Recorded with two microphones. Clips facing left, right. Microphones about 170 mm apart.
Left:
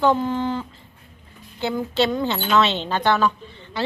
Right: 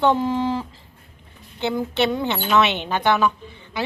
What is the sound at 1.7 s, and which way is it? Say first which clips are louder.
Speech: left 1 dB; 15° right (ahead or behind).